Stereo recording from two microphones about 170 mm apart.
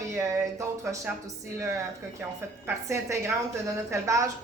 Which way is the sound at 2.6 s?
15° right (ahead or behind).